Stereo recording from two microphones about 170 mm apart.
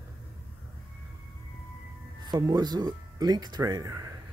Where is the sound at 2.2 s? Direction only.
25° right (ahead or behind).